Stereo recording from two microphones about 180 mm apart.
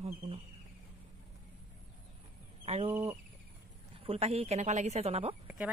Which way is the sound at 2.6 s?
35° right (ahead or behind).